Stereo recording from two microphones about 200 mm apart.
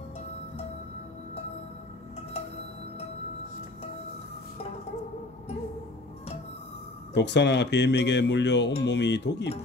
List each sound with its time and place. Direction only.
7.2 s speech: 60° left (ahead or behind)